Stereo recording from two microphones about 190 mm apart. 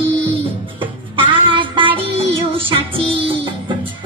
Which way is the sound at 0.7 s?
25° right (ahead or behind).